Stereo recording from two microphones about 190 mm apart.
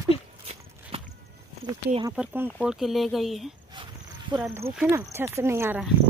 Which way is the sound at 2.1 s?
10° right (ahead or behind).